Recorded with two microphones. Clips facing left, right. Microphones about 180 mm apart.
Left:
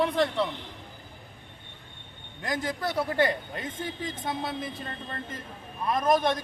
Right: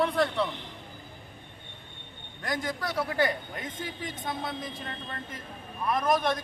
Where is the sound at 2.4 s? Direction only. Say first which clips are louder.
Left 2 dB; 25° left (ahead or behind).